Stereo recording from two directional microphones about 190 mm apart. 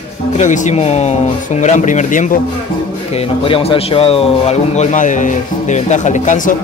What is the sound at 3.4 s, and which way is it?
A man's voice, 30° left (ahead or behind).